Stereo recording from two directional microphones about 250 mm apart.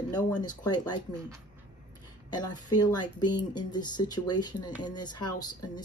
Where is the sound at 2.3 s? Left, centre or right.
Centre.